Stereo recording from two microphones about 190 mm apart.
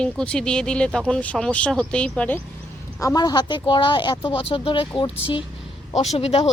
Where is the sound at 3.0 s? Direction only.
20° left (ahead or behind).